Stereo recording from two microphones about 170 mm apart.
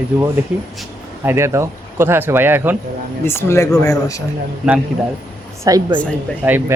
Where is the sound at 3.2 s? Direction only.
15° left (ahead or behind).